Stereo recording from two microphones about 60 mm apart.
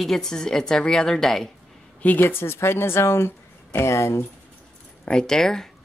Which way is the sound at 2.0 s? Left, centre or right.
Left.